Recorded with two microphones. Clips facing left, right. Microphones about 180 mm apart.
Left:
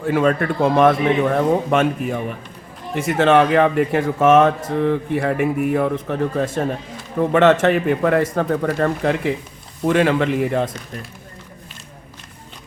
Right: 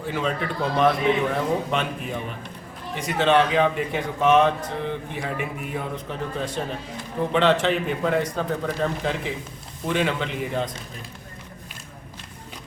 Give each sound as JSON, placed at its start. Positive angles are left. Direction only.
{"t": 0.0, "sound": "a man's voice", "side_deg": 55}